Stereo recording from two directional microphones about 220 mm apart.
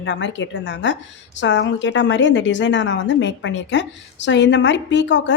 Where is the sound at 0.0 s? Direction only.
55° left (ahead or behind).